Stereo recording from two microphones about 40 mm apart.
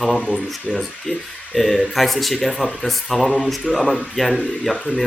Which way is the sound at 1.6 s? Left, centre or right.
Centre.